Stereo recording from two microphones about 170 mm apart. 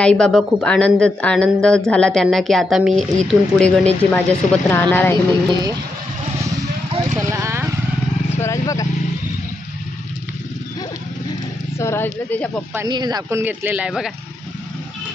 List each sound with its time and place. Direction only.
0.0 s speech: 5° left (ahead or behind)
7.2 s vehicle: 15° right (ahead or behind)
8.3 s vehicle: 15° left (ahead or behind)
11.8 s speech: 15° left (ahead or behind)
12.7 s speech: 25° right (ahead or behind); by 14.1 s 5° right (ahead or behind)